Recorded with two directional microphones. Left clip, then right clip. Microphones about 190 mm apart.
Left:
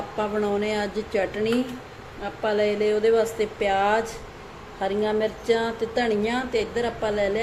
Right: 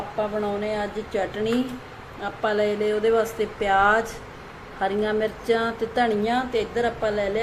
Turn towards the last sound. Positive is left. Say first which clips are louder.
# right 1 dB
turn(degrees=0)  # may be behind; listen again after turning